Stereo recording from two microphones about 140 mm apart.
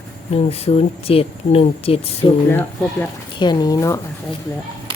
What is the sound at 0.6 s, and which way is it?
A woman's voice, 45° left (ahead or behind).